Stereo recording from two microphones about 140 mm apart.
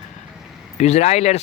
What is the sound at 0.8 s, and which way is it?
Speech, 50° left (ahead or behind).